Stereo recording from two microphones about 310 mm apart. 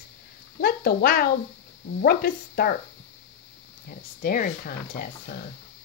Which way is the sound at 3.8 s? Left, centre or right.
Left.